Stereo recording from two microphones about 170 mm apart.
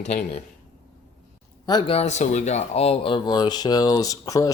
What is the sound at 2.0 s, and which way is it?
Speech, 40° left (ahead or behind).